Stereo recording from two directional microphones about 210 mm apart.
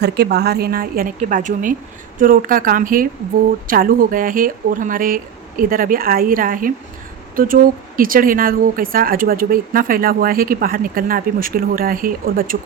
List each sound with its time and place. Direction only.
0.0 s speech: 50° right (ahead or behind)